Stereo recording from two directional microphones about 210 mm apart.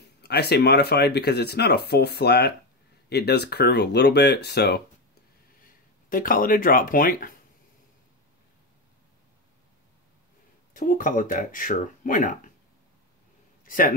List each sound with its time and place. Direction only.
0.2 s speech: 50° left (ahead or behind)
6.0 s speech: 40° left (ahead or behind)
10.7 s speech: 40° left (ahead or behind)
13.7 s a man's voice: 40° left (ahead or behind)